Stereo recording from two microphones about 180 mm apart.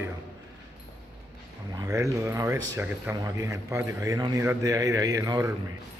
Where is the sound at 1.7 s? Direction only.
20° right (ahead or behind).